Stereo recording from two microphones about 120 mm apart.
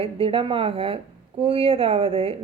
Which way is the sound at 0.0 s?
50° right (ahead or behind).